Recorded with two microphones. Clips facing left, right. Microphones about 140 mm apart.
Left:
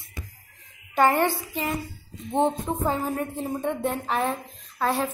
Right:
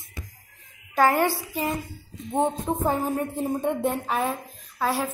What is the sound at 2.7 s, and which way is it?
A woman's voice, 15° right (ahead or behind).